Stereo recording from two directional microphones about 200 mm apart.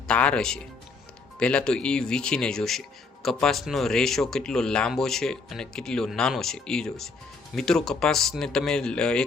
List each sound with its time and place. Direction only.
0.1 s speech: 5° left (ahead or behind)